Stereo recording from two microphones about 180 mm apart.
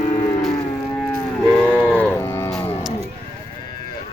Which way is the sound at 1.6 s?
10° left (ahead or behind).